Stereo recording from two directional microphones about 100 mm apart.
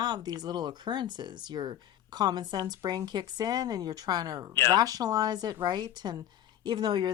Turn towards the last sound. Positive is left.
turn(degrees=-45)  # may be behind; listen again after turning